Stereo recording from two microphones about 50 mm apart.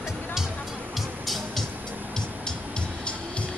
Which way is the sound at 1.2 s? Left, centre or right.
Centre.